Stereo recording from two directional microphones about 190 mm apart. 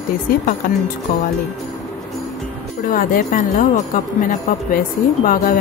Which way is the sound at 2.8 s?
45° left (ahead or behind).